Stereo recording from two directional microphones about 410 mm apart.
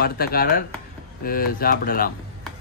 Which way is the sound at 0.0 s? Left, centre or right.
Left.